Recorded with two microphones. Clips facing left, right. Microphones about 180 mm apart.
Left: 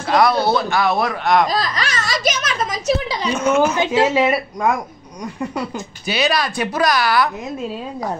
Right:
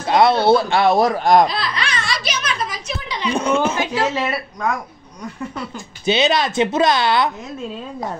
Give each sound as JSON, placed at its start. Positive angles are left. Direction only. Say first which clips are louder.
{"t": 0.0, "sound": "speech", "louder": "right 1 dB", "side_deg": -25}
{"t": 1.0, "sound": "speech", "louder": "right 3 dB", "side_deg": -40}
{"t": 1.5, "sound": "laughter", "louder": "left 3 dB", "side_deg": 40}
{"t": 2.9, "sound": "a sound", "louder": "left 8 dB", "side_deg": 35}
{"t": 3.3, "sound": "speech", "louder": "left 2 dB", "side_deg": -30}
{"t": 4.1, "sound": "speech", "louder": "left 6 dB", "side_deg": 10}
{"t": 6.0, "sound": "speech", "louder": "right 3 dB", "side_deg": -25}